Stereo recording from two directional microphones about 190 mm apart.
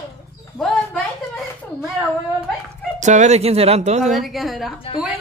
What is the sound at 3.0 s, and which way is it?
Speech, 40° right (ahead or behind).